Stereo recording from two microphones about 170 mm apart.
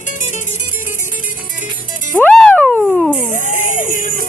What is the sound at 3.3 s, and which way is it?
Music, 50° left (ahead or behind).